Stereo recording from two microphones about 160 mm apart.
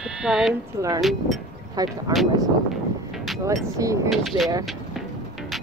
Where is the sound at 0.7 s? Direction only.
20° right (ahead or behind).